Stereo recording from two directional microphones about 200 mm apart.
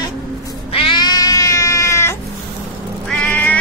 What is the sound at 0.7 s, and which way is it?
Cat, 25° left (ahead or behind).